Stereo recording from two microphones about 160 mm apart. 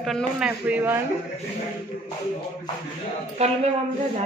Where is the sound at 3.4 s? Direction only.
40° right (ahead or behind).